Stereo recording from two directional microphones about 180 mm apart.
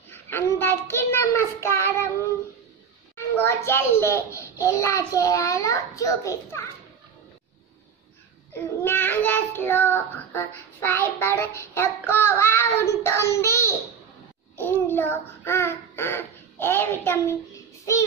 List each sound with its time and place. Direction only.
0.1 s child singing: 10° left (ahead or behind)
3.2 s child singing: 15° left (ahead or behind)
8.5 s child singing: 10° left (ahead or behind)
14.6 s a child's voice: 10° left (ahead or behind)